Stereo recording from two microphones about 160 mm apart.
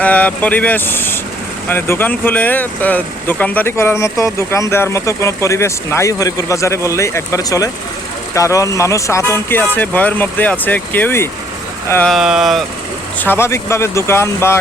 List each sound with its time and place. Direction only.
0.0 s speech: 10° left (ahead or behind)
12.1 s speech: centre (ahead or behind)
13.1 s speech: 15° left (ahead or behind)